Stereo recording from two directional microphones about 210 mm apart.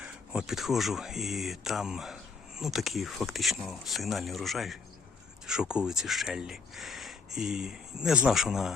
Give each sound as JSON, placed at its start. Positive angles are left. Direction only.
{"t": 0.0, "sound": "speech", "side_deg": -5}